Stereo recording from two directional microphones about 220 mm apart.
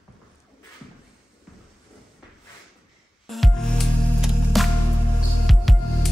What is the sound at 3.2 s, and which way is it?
Music, centre (ahead or behind).